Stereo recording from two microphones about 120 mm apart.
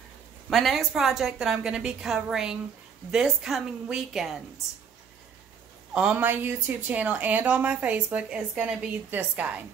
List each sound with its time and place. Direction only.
0.5 s a woman's voice: centre (ahead or behind)
5.9 s speech: 15° right (ahead or behind)